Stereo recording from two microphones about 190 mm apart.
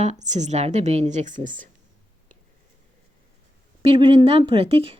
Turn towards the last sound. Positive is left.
turn(degrees=-30)  # may be behind; listen again after turning